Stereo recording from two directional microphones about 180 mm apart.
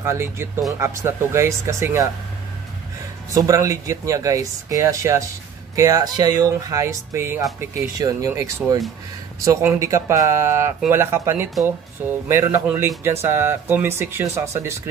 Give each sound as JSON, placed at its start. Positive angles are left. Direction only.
{"t": 0.0, "sound": "speech", "side_deg": -15}
{"t": 3.3, "sound": "speech", "side_deg": -20}